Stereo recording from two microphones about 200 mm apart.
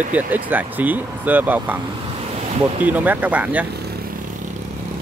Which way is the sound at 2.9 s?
10° right (ahead or behind).